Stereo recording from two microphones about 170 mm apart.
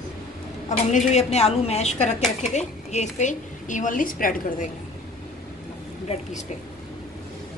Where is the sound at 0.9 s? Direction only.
40° left (ahead or behind).